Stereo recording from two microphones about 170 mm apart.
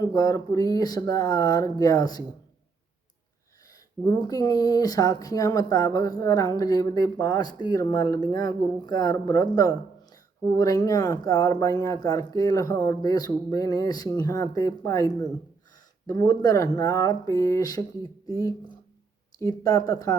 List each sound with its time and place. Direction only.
0.0 s speech: 20° left (ahead or behind)
4.0 s speech: 20° left (ahead or behind)